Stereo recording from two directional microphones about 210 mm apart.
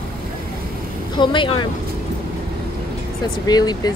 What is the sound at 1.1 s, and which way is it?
Speech, 20° left (ahead or behind).